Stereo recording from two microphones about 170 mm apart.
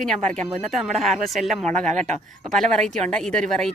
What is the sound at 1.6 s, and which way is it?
Speech, 45° right (ahead or behind).